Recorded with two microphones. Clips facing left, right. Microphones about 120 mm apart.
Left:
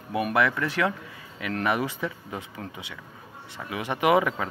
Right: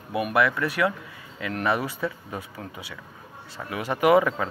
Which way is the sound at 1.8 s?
20° left (ahead or behind).